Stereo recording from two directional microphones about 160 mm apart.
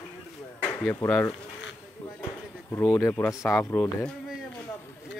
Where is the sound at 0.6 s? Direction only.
10° left (ahead or behind).